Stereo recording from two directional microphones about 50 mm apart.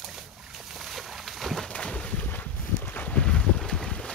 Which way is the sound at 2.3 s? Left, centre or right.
Left.